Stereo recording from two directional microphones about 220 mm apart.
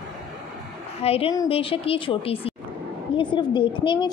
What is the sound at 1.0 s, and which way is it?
A woman's voice, 25° left (ahead or behind).